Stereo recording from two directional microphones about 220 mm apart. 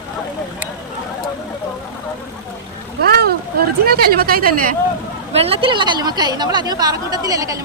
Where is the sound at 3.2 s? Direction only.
45° right (ahead or behind).